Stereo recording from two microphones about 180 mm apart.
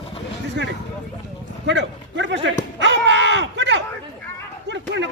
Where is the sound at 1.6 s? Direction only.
80° right.